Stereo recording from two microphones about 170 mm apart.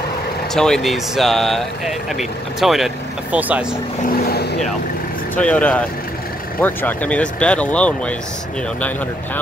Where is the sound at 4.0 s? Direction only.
60° left (ahead or behind).